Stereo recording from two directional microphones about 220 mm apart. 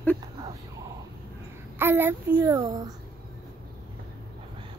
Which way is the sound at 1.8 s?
10° right (ahead or behind).